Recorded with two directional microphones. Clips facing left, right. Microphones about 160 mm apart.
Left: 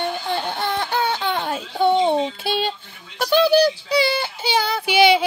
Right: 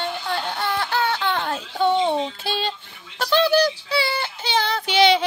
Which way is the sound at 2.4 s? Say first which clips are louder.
Left 3 dB; 15° left (ahead or behind).